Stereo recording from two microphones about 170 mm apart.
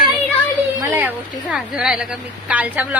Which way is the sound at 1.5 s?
5° right (ahead or behind).